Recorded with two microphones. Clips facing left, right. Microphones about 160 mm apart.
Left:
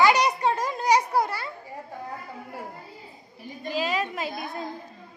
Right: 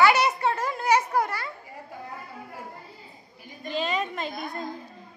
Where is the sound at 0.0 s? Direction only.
15° left (ahead or behind).